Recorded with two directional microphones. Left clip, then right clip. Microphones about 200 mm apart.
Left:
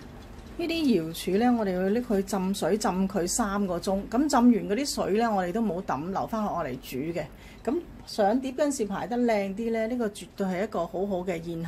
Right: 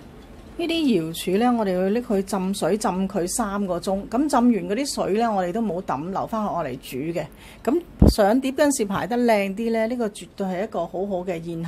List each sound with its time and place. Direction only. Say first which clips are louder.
0.6 s a woman's voice: right 4 dB; 20° right (ahead or behind)
8.0 s a woman's voice: right 7 dB; 30° right (ahead or behind); by 11.5 s 10° right (ahead or behind)